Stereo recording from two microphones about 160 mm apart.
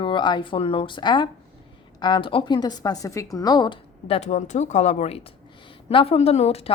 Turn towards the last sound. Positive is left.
turn(degrees=40)  # may be behind; listen again after turning